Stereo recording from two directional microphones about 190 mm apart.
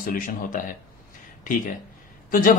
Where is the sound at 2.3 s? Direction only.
45° left (ahead or behind).